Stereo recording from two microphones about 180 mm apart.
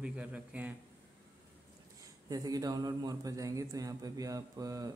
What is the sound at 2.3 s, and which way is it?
A man's voice, 20° right (ahead or behind).